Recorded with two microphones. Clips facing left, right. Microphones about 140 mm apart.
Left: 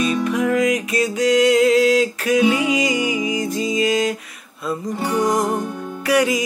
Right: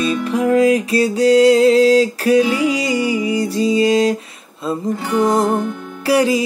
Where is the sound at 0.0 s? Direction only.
30° right (ahead or behind).